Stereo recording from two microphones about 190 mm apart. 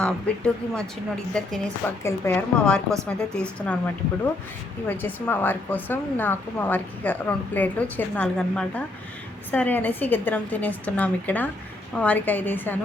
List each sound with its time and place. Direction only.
0.0 s a woman's voice: 5° left (ahead or behind)
4.9 s a woman's voice: 10° left (ahead or behind)